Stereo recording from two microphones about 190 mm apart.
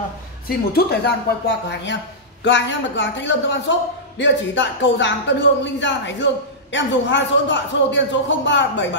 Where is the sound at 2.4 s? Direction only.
70° left (ahead or behind).